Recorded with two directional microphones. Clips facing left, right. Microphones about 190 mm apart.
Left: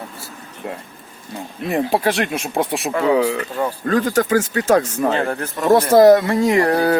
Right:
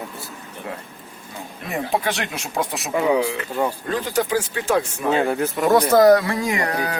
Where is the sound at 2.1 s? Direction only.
55° left (ahead or behind).